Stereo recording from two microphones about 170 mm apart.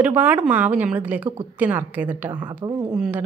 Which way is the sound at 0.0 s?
10° right (ahead or behind).